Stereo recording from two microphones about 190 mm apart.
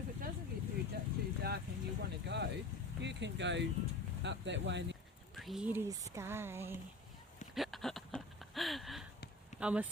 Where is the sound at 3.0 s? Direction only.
65° right (ahead or behind).